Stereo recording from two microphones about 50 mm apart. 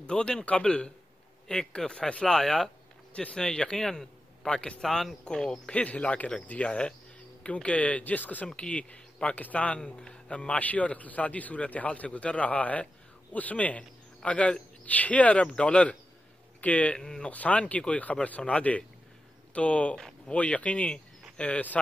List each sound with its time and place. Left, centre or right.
0.0 s a man's voice: centre
2.3 s speech: centre
3.1 s a man's voice: left
4.6 s speech: left
4.8 s speech: centre
5.7 s speech: left
17.0 s speech: centre
17.3 s speech: left